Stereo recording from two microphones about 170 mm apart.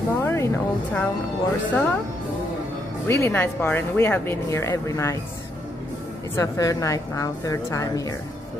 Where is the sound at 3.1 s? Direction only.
15° left (ahead or behind).